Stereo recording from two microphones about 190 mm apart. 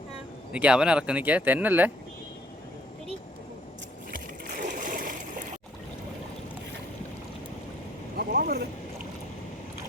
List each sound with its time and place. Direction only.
0.5 s speech: 5° right (ahead or behind)
4.1 s splash: 45° right (ahead or behind)
8.1 s vehicle: 50° right (ahead or behind)